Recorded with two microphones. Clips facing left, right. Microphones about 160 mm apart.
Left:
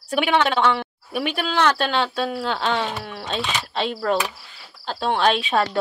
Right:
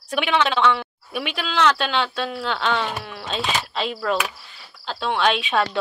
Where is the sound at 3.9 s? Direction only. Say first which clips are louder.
Left 2 dB; 30° left (ahead or behind).